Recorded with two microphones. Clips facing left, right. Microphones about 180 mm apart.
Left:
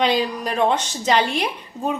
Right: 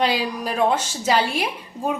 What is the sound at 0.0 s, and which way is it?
A woman's voice, 5° right (ahead or behind).